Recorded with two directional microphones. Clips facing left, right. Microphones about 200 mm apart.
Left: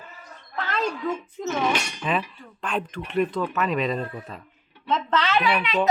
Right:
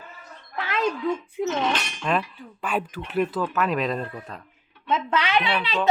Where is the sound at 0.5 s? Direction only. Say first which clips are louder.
Right 2 dB; 10° right (ahead or behind).